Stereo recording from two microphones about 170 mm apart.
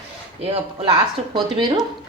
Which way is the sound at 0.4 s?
35° right (ahead or behind).